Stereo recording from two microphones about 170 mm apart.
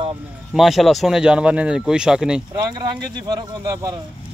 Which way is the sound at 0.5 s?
Centre (ahead or behind).